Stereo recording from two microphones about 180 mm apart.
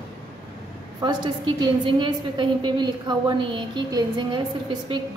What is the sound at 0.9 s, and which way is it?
A woman's voice, 25° right (ahead or behind).